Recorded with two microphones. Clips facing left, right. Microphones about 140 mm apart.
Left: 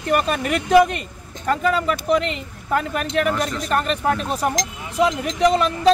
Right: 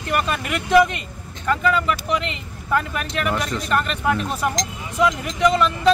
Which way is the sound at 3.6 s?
40° left (ahead or behind).